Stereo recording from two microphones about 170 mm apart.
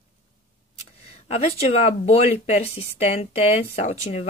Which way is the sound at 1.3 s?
35° left (ahead or behind).